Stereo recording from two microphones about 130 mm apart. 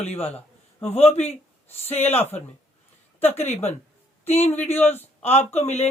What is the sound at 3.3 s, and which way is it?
Speech, 55° left (ahead or behind).